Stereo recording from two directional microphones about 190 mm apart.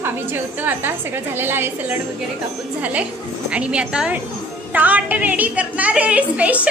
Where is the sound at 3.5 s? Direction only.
5° right (ahead or behind).